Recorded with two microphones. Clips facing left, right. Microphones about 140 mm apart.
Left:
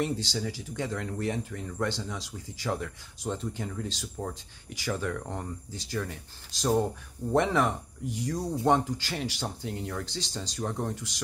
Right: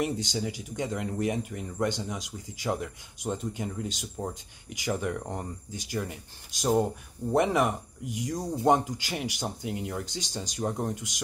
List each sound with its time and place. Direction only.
0.0 s speech: 15° right (ahead or behind)